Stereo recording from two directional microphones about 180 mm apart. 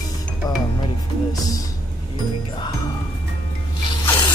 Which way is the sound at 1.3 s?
20° left (ahead or behind).